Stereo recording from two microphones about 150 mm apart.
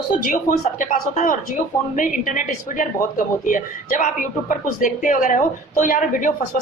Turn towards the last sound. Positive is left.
turn(degrees=60)  # may be behind; listen again after turning